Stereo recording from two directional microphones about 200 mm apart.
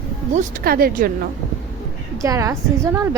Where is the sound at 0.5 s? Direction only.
50° right (ahead or behind).